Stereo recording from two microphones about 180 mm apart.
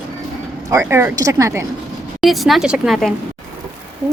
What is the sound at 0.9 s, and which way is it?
Speech, 15° right (ahead or behind).